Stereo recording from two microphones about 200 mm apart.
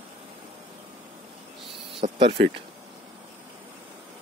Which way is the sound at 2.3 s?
25° right (ahead or behind).